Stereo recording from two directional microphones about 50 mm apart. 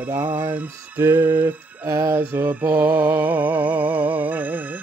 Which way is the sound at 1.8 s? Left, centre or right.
Right.